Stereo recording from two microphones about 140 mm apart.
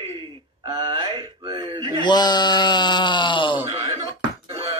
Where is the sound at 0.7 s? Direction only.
30° right (ahead or behind).